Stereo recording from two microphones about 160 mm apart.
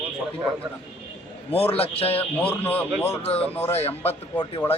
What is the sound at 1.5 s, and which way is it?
Speech, 40° left (ahead or behind).